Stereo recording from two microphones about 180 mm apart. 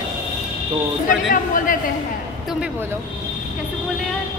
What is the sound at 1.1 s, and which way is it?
Speech, 50° left (ahead or behind).